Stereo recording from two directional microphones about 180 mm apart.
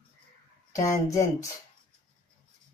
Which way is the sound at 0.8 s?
15° left (ahead or behind).